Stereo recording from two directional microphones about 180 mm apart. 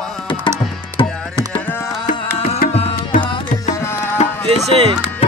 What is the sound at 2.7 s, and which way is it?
Music, 35° left (ahead or behind).